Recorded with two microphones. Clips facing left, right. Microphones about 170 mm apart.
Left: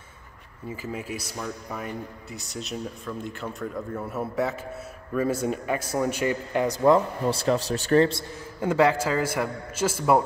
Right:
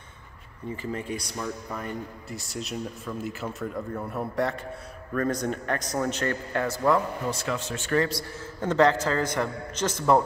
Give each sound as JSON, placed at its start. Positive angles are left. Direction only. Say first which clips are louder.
{"t": 0.9, "sound": "a man's voice", "louder": "right 1 dB", "side_deg": 5}
{"t": 8.5, "sound": "a man's voice", "louder": "even", "side_deg": 10}